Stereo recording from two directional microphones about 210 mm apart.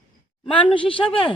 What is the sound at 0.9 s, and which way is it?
Speech, 25° left (ahead or behind).